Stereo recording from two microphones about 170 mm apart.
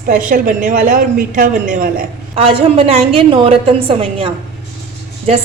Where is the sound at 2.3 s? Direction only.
30° right (ahead or behind).